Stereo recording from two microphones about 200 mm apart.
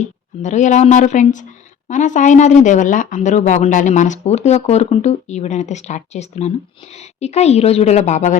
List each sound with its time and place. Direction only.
0.4 s speech: 35° left (ahead or behind)